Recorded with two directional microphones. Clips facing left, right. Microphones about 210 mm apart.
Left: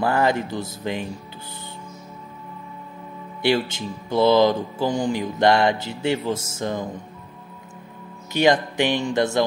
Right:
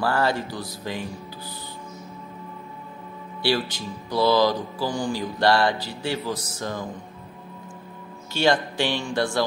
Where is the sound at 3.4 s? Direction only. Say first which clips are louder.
Left 3 dB; 20° left (ahead or behind).